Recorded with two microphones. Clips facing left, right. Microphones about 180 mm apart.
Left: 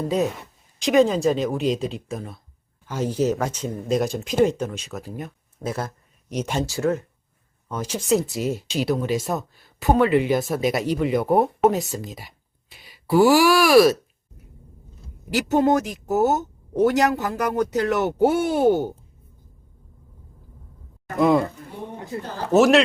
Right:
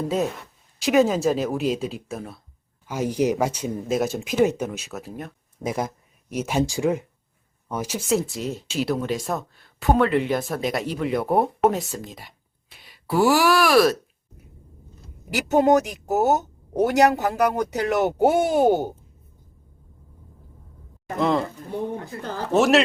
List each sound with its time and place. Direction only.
0.8 s speech: 5° right (ahead or behind)
5.6 s speech: 15° right (ahead or behind)
8.4 s speech: 10° left (ahead or behind)
15.3 s speech: 10° right (ahead or behind)
21.2 s speech: 10° left (ahead or behind)
22.1 s speech: 20° left (ahead or behind)
22.5 s speech: centre (ahead or behind)